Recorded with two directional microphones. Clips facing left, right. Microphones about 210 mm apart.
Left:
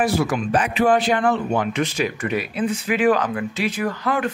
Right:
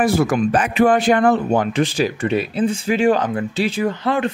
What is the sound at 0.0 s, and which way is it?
Speech, 45° right (ahead or behind).